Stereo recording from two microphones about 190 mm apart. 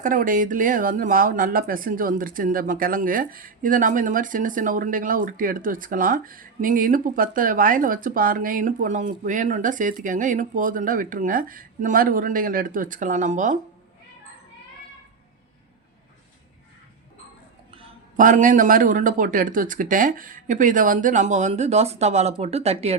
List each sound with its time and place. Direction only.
0.0 s speech: 45° right (ahead or behind)
18.2 s speech: 45° right (ahead or behind)